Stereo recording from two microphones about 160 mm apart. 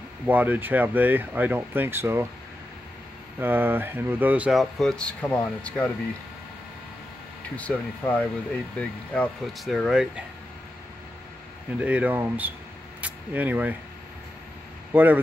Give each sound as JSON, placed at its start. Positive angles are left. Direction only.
{"t": 0.3, "sound": "speech", "side_deg": -10}
{"t": 3.3, "sound": "speech", "side_deg": -15}
{"t": 7.5, "sound": "speech", "side_deg": 10}
{"t": 11.8, "sound": "speech", "side_deg": -10}
{"t": 14.9, "sound": "speech", "side_deg": -10}